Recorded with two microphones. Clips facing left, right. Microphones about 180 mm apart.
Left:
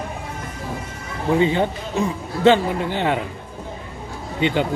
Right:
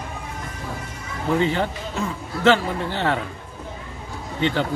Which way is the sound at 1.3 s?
15° left (ahead or behind).